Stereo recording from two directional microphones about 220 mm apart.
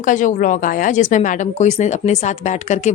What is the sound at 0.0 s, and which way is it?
Speech, 35° left (ahead or behind).